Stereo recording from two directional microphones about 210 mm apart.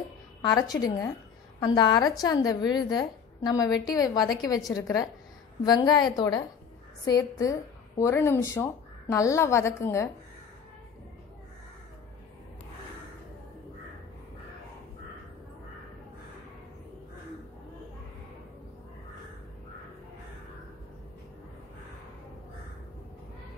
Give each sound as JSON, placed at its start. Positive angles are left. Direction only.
{"t": 0.4, "sound": "a woman's voice", "side_deg": 20}